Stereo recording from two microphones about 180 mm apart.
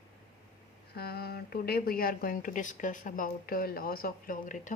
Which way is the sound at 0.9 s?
60° left (ahead or behind).